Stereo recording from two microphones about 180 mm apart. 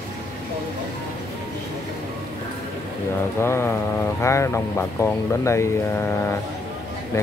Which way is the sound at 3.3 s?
15° left (ahead or behind).